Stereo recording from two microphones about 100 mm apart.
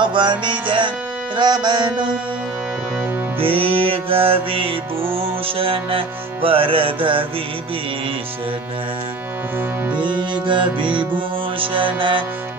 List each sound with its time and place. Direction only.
0.0 s music: 50° right (ahead or behind)
3.3 s music: 65° right (ahead or behind)
9.9 s music: 55° right (ahead or behind)